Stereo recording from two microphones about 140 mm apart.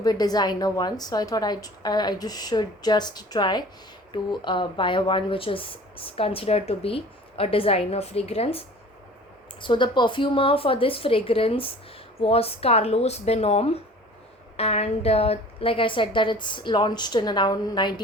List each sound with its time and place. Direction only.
0.0 s a woman's voice: 30° left (ahead or behind)